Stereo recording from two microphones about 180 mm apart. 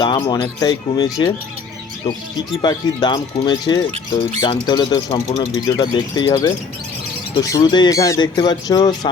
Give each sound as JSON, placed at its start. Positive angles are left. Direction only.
{"t": 0.0, "sound": "speech", "side_deg": 25}
{"t": 2.6, "sound": "speech", "side_deg": 25}